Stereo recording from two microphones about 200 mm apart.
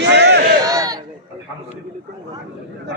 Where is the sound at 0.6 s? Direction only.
15° right (ahead or behind).